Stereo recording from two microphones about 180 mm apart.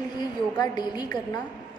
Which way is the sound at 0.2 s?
25° left (ahead or behind).